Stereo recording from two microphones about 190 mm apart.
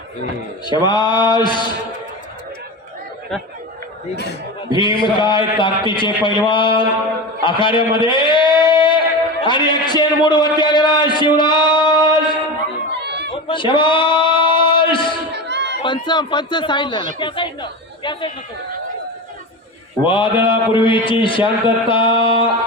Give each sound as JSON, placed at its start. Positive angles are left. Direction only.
{"t": 0.9, "sound": "a man's voice", "side_deg": 25}
{"t": 4.8, "sound": "a man's voice", "side_deg": 25}
{"t": 13.0, "sound": "chatter", "side_deg": -65}
{"t": 13.3, "sound": "a sound", "side_deg": 25}
{"t": 15.3, "sound": "a sound", "side_deg": -60}
{"t": 15.8, "sound": "a man's voice", "side_deg": 25}
{"t": 20.1, "sound": "a man's voice", "side_deg": 25}